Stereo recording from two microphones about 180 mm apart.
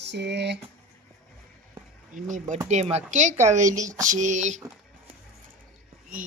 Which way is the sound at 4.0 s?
45° right (ahead or behind).